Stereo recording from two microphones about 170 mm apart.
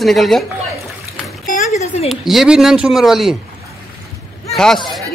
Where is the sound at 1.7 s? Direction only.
40° left (ahead or behind).